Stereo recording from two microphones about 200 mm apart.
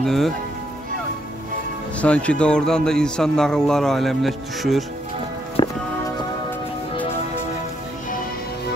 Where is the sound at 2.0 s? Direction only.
5° left (ahead or behind).